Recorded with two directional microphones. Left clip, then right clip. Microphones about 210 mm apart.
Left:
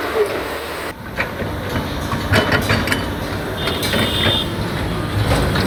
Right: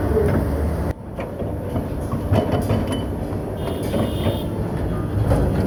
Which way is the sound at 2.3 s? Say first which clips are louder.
Left 6 dB; 15° left (ahead or behind).